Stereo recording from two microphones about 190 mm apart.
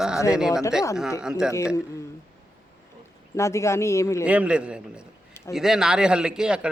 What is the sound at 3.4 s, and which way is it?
Speech, 15° left (ahead or behind).